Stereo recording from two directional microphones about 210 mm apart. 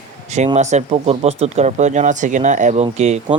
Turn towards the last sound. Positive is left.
turn(degrees=-30)  # may be behind; listen again after turning